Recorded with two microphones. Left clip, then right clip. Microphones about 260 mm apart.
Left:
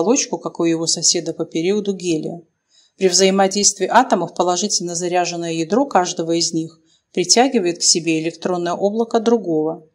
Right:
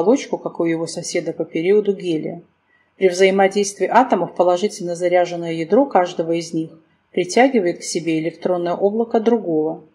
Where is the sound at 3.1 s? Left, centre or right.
Left.